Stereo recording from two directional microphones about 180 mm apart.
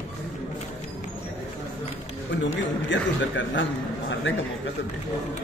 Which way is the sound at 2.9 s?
90° left.